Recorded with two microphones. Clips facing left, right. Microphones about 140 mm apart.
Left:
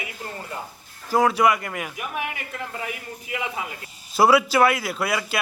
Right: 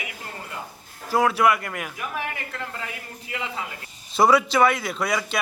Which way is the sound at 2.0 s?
20° left (ahead or behind).